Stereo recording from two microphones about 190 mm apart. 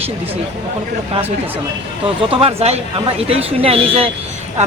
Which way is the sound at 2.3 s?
30° right (ahead or behind).